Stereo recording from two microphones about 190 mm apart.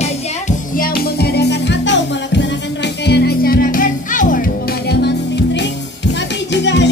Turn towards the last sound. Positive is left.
turn(degrees=70)  # may be behind; listen again after turning